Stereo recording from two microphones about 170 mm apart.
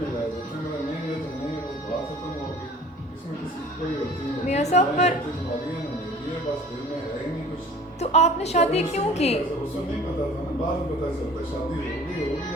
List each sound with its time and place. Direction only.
4.4 s a woman's voice: 40° left (ahead or behind)
8.0 s a woman's voice: 40° left (ahead or behind)